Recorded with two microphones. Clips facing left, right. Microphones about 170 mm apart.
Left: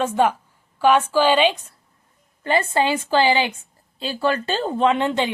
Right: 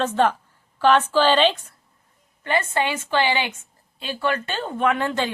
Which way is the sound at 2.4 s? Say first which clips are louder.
Left 3 dB; 30° left (ahead or behind).